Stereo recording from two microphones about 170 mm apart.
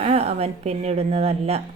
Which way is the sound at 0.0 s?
35° right (ahead or behind).